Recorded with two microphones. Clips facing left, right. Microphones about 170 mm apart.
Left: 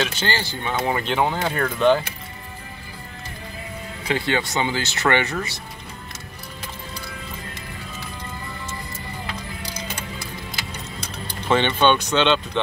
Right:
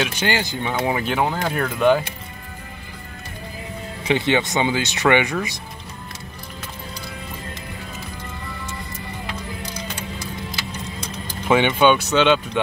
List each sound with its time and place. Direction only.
0.0 s speech: 15° right (ahead or behind)
4.0 s speech: 20° right (ahead or behind)
11.4 s speech: 10° right (ahead or behind)